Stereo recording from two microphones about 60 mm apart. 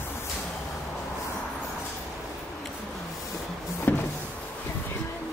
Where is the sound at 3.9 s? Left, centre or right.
Left.